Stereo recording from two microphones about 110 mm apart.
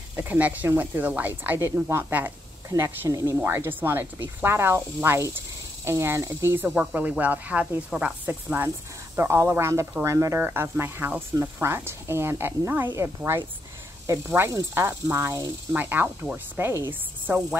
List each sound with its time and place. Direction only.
0.1 s speech: 15° right (ahead or behind)
15.7 s speech: 15° right (ahead or behind)